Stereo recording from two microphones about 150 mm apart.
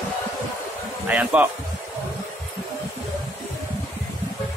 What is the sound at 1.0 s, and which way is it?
Speech, 10° right (ahead or behind).